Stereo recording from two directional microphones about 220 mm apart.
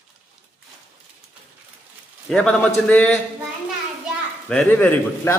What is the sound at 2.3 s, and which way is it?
Speech, 5° left (ahead or behind).